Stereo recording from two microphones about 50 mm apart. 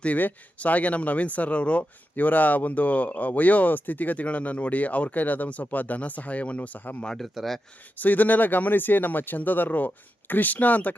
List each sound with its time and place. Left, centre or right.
0.2 s speech: left
6.7 s speech: left
7.2 s speech: centre
7.9 s speech: left